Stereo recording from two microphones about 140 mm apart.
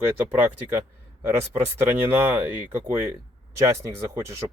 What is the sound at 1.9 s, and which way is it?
Speech, 10° right (ahead or behind).